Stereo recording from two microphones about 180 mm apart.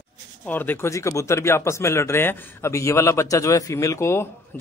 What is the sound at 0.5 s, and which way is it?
A man's voice, 10° left (ahead or behind).